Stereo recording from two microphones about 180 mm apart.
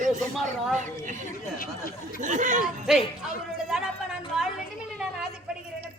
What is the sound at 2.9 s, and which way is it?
Speech, 5° right (ahead or behind).